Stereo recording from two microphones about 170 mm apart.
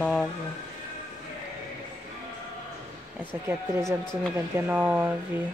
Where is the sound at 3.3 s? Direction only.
15° right (ahead or behind).